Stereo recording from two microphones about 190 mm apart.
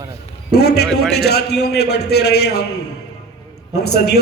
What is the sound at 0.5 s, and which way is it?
A man's voice, 60° left (ahead or behind).